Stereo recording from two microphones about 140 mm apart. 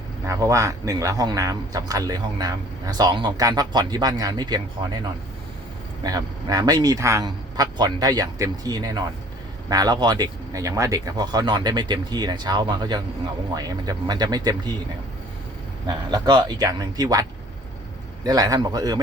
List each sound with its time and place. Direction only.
0.3 s speech: 25° right (ahead or behind)
6.0 s speech: 25° right (ahead or behind)
15.9 s speech: 30° right (ahead or behind)
18.3 s speech: 25° right (ahead or behind)